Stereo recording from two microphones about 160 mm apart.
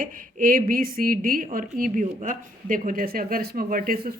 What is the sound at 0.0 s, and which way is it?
Speech, 60° right (ahead or behind).